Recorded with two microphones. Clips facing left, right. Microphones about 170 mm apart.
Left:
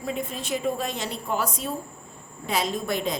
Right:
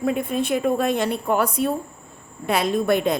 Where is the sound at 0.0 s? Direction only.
60° right (ahead or behind).